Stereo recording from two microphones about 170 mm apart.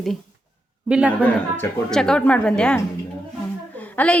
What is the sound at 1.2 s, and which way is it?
A woman's voice, 5° left (ahead or behind).